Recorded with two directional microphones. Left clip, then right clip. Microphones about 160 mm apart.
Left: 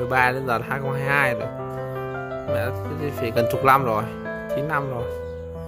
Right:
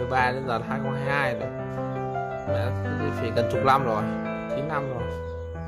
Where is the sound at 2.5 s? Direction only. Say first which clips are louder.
Left 6 dB; 10° left (ahead or behind).